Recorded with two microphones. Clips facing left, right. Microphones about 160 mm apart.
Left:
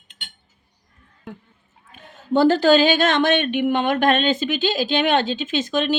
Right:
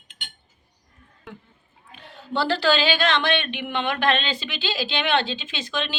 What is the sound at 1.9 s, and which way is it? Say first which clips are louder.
Speech: left 8 dB; 45° left (ahead or behind).